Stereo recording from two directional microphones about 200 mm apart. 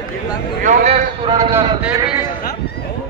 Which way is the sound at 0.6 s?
35° right (ahead or behind).